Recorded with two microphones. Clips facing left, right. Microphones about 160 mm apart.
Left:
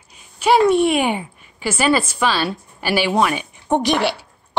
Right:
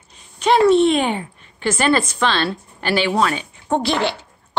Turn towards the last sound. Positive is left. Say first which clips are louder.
# left 1 dB
turn(degrees=10)  # may be behind; listen again after turning